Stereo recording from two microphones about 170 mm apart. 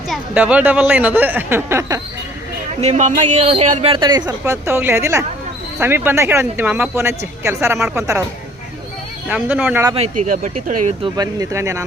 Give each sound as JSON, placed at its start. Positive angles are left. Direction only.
{"t": 0.1, "sound": "speech", "side_deg": -10}
{"t": 2.8, "sound": "speech", "side_deg": -40}
{"t": 4.0, "sound": "speech", "side_deg": -25}
{"t": 9.3, "sound": "speech", "side_deg": -10}
{"t": 10.2, "sound": "speech", "side_deg": -55}
{"t": 11.0, "sound": "speech", "side_deg": -20}